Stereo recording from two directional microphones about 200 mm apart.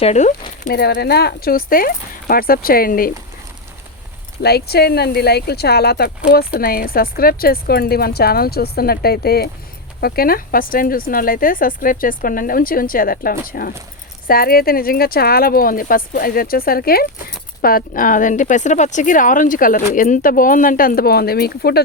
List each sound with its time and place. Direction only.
0.0 s speech: 35° left (ahead or behind)
0.7 s a woman's voice: 55° left (ahead or behind)
4.4 s a woman's voice: 50° left (ahead or behind)